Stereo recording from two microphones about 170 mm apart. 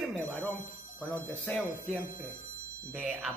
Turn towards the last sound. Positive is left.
turn(degrees=-10)  # may be behind; listen again after turning